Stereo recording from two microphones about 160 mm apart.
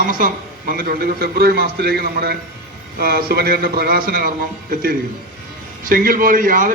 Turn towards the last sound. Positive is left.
turn(degrees=-60)  # may be behind; listen again after turning